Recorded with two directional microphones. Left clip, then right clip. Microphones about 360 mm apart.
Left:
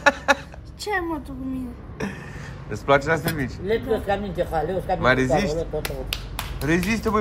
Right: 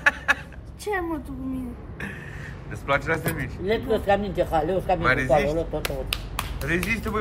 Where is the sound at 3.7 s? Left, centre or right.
Right.